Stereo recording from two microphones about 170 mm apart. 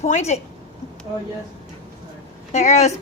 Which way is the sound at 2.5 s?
45° left (ahead or behind).